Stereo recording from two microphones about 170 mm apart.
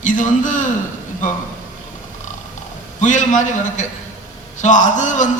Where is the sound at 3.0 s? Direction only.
45° left (ahead or behind).